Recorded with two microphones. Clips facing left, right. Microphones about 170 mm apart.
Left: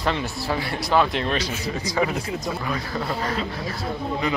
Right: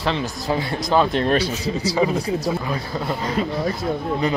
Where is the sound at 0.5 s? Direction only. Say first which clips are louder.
Right 3 dB; 20° right (ahead or behind).